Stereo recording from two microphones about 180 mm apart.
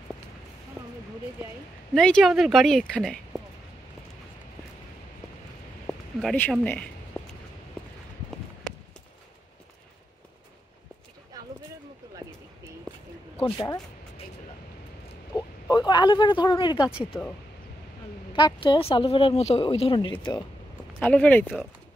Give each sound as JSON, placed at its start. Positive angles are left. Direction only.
{"t": 2.0, "sound": "speech", "side_deg": 5}
{"t": 5.9, "sound": "a sound", "side_deg": 5}
{"t": 13.4, "sound": "music", "side_deg": 30}
{"t": 15.3, "sound": "speech", "side_deg": 25}
{"t": 18.3, "sound": "speech", "side_deg": 25}
{"t": 21.0, "sound": "speech", "side_deg": 10}